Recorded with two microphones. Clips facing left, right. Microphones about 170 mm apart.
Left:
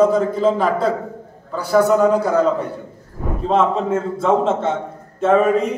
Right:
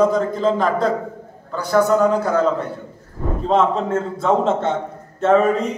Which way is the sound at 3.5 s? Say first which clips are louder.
Even; 5° left (ahead or behind).